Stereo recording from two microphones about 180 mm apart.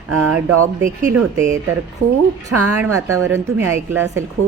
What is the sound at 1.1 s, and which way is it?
Speech, 15° right (ahead or behind).